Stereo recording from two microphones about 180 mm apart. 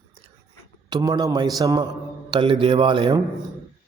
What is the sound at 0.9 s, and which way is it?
A man's voice, 25° right (ahead or behind).